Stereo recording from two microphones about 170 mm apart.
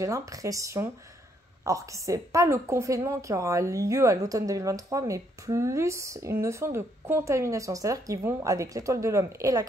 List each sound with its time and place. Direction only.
0.0 s a woman's voice: 20° right (ahead or behind)